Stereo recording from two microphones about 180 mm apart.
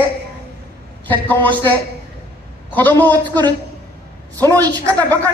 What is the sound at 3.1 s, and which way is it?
A man's voice, 25° right (ahead or behind).